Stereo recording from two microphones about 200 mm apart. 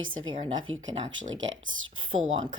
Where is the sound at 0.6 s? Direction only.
75° right (ahead or behind).